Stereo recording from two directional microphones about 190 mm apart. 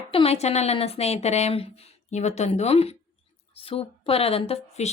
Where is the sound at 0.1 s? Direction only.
30° left (ahead or behind).